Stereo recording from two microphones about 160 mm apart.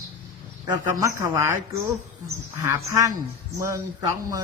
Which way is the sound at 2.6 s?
20° right (ahead or behind).